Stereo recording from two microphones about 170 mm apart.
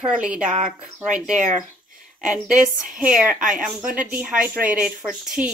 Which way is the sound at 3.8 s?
55° right (ahead or behind).